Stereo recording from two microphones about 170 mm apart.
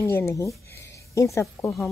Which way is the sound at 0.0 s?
15° left (ahead or behind).